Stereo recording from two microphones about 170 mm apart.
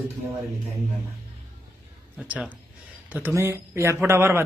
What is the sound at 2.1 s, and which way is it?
A man's voice, 5° right (ahead or behind).